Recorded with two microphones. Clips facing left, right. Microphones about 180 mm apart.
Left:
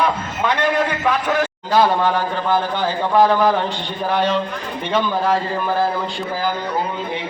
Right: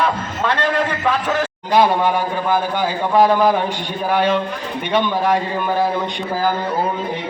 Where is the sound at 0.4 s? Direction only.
10° left (ahead or behind).